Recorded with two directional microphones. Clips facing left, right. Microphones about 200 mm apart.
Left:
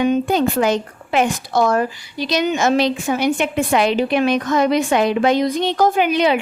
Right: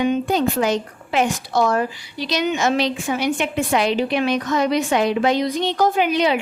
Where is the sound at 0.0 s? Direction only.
50° left (ahead or behind).